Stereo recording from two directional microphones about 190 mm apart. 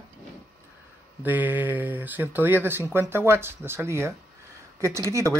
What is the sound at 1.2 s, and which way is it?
Speech, 10° right (ahead or behind).